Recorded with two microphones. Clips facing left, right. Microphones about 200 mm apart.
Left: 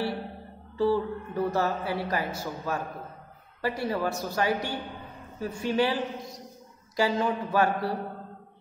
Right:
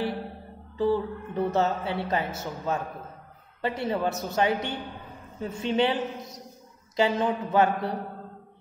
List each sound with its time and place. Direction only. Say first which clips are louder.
0.7 s speech: even; 20° right (ahead or behind)